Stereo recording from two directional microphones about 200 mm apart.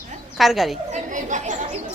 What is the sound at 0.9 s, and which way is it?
Chatter, 40° right (ahead or behind).